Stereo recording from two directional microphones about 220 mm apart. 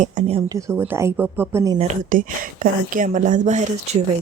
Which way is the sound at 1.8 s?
35° right (ahead or behind).